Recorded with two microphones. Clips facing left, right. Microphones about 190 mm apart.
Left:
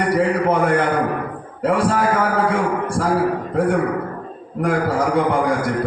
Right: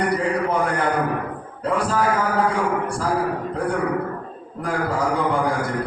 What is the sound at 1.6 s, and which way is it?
Speech, 90° left.